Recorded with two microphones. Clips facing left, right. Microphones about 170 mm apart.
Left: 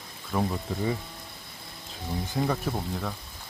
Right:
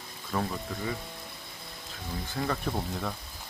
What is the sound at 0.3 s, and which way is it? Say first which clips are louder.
Speech: left 3 dB; 5° left (ahead or behind).